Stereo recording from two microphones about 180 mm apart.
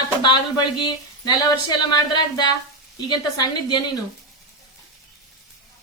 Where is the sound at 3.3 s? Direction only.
25° left (ahead or behind).